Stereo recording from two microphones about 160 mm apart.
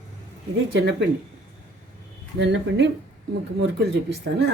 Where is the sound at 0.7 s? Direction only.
90° right.